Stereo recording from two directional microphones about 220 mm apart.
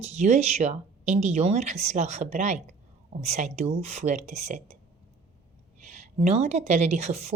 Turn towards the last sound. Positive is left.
turn(degrees=-30)  # may be behind; listen again after turning